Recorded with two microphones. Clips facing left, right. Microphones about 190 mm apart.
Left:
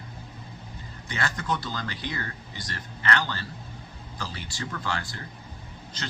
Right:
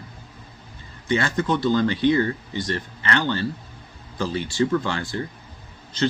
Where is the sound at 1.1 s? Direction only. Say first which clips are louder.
Right 8 dB; 25° right (ahead or behind).